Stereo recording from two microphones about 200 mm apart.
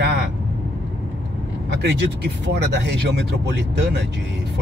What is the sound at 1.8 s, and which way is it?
Speech, 55° right (ahead or behind).